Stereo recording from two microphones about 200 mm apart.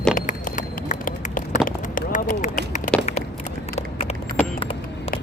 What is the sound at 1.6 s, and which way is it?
Run, 40° left (ahead or behind).